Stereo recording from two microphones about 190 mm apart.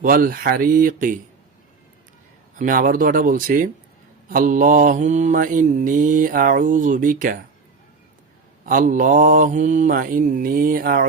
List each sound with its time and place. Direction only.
0.0 s mantra: 50° right (ahead or behind)
2.6 s mantra: 45° right (ahead or behind)
8.6 s mantra: 45° right (ahead or behind)